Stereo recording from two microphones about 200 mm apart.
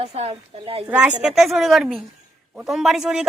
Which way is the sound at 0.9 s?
5° right (ahead or behind).